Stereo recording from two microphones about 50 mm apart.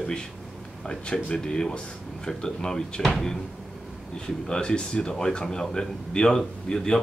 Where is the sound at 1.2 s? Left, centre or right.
Centre.